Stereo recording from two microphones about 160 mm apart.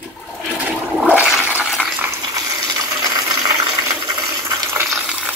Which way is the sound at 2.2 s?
20° right (ahead or behind).